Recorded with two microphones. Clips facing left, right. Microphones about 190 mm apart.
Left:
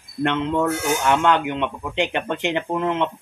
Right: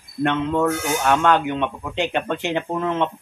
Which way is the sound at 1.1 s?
15° left (ahead or behind).